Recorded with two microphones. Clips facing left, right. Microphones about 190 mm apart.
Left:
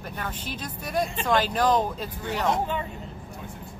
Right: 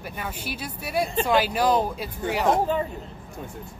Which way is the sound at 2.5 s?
40° right (ahead or behind).